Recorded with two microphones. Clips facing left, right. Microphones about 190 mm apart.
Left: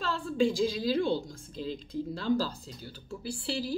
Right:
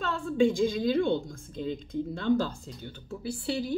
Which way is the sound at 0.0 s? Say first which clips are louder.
Right 3 dB; 30° left (ahead or behind).